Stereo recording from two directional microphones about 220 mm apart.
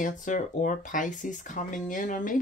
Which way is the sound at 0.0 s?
35° left (ahead or behind).